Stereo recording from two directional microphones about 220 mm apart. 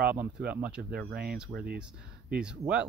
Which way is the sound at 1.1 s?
45° right (ahead or behind).